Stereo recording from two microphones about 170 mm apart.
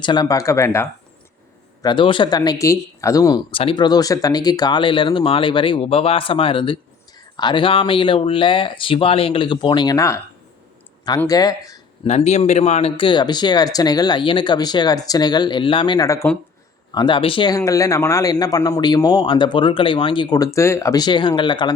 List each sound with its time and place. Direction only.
0.0 s speech: 25° left (ahead or behind)
1.8 s speech: 25° left (ahead or behind)
3.5 s speech: 30° left (ahead or behind)
11.3 s speech: 20° left (ahead or behind)
12.0 s speech: 40° left (ahead or behind); by 16.4 s 15° left (ahead or behind)
16.9 s speech: 25° left (ahead or behind)